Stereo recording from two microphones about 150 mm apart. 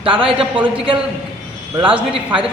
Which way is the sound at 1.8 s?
35° right (ahead or behind).